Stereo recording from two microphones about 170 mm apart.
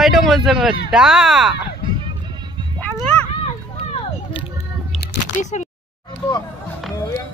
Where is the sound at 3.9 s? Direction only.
35° left (ahead or behind).